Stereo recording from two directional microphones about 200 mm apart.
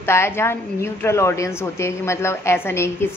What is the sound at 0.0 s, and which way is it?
A woman's voice, 10° left (ahead or behind).